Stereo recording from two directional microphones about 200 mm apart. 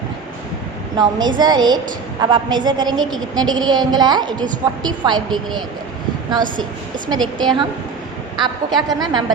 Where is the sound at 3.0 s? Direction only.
Centre (ahead or behind).